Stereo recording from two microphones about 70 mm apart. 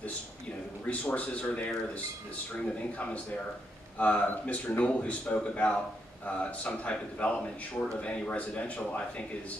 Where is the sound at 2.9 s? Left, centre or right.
Left.